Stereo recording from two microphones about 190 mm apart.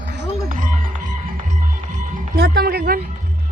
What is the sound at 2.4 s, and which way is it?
Speech, 60° right (ahead or behind).